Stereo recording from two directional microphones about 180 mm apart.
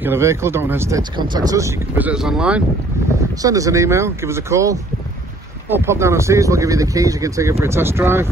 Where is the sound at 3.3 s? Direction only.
20° right (ahead or behind).